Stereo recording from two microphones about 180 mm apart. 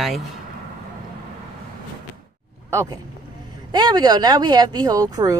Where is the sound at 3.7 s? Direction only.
25° right (ahead or behind).